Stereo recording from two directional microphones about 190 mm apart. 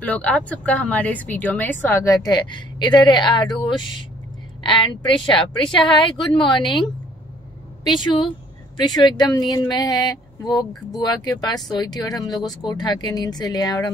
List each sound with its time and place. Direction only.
0.0 s speech: 5° left (ahead or behind); by 3.5 s 25° left (ahead or behind)
4.6 s speech: 25° left (ahead or behind)
7.9 s speech: 25° left (ahead or behind)